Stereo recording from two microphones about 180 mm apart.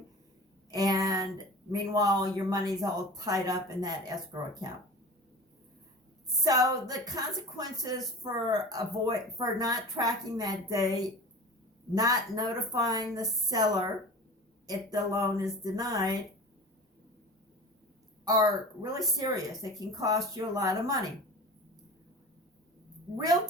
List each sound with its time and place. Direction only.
0.7 s a sound: 20° right (ahead or behind)
1.7 s a woman's voice: 20° right (ahead or behind)
6.4 s a woman's voice: 20° right (ahead or behind)
18.3 s a woman's voice: 20° right (ahead or behind)